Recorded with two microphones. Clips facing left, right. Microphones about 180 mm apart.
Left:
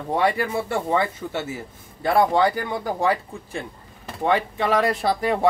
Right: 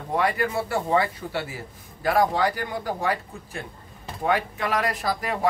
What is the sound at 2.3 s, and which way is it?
Speech, 25° left (ahead or behind).